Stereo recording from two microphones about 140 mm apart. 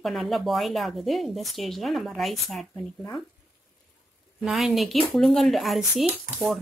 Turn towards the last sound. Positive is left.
turn(degrees=0)  # may be behind; listen again after turning